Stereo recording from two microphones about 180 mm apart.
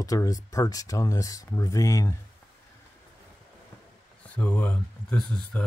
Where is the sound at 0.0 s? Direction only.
20° left (ahead or behind).